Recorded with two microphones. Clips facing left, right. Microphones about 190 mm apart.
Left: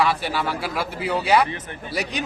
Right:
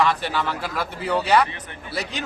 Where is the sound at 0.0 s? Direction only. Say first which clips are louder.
Even; 10° left (ahead or behind).